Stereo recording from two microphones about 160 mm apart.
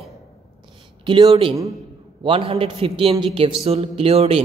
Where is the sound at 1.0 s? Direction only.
35° right (ahead or behind).